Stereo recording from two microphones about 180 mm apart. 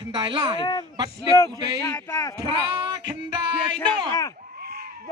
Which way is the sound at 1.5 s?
25° right (ahead or behind).